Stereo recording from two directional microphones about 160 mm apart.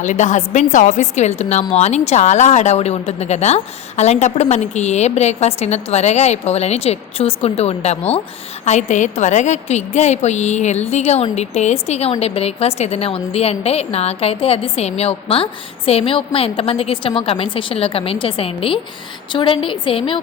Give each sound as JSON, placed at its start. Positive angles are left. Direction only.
{"t": 0.0, "sound": "a woman's voice", "side_deg": 50}